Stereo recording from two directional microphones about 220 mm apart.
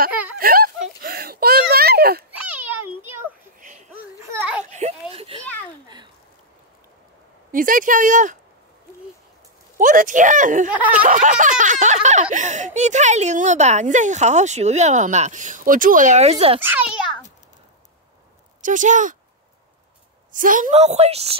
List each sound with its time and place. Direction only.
0.4 s a sound: 40° right (ahead or behind)
2.3 s a sound: 10° right (ahead or behind)
3.6 s music: 30° right (ahead or behind)
4.3 s children playing: 10° right (ahead or behind)
4.6 s a sound: 30° right (ahead or behind)
7.5 s speech: 40° right (ahead or behind)
9.8 s speech: 35° right (ahead or behind)
16.6 s a child's voice: 5° right (ahead or behind)
18.6 s speech: 35° right (ahead or behind)
20.3 s a woman's voice: 35° right (ahead or behind)